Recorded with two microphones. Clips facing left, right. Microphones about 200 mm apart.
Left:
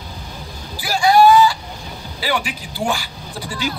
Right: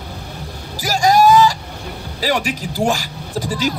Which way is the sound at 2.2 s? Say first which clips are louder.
Right 4 dB; 40° right (ahead or behind).